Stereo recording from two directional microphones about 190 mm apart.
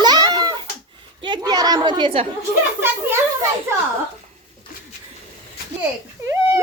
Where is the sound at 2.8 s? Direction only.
10° right (ahead or behind).